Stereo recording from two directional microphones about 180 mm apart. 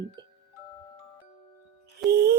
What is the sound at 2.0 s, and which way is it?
Music, centre (ahead or behind).